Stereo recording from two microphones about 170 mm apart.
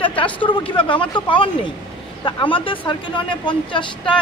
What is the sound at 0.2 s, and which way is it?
Speech, 30° left (ahead or behind).